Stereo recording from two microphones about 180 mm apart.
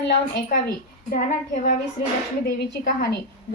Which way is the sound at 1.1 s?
50° left (ahead or behind).